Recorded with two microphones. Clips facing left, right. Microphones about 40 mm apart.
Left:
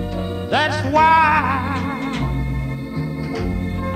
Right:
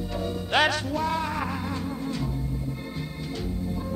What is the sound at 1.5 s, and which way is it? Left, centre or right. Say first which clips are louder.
Music: left 9 dB; left.